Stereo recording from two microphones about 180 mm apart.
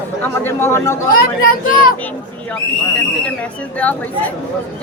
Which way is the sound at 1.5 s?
50° left (ahead or behind).